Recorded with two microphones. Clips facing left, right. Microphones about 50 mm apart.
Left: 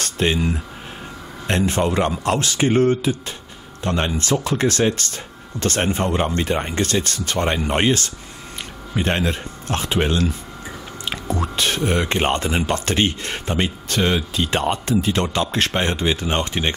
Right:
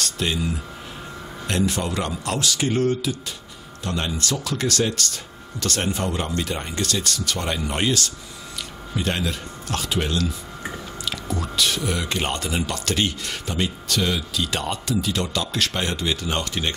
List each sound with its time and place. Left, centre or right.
0.0 s speech: left